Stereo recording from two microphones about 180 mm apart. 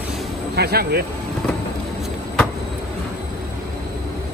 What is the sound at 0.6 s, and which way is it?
Speech, 60° right (ahead or behind).